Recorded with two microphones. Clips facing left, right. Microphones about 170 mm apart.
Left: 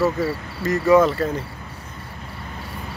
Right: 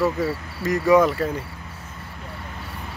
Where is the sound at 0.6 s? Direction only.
15° right (ahead or behind).